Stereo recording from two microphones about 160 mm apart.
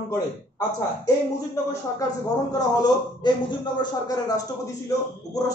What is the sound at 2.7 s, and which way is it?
Speech, 25° left (ahead or behind).